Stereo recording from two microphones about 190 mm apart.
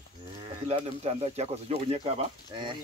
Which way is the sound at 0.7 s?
30° right (ahead or behind).